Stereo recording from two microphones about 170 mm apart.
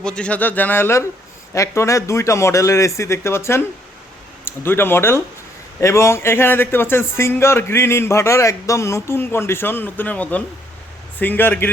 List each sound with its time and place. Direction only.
0.0 s speech: 5° left (ahead or behind)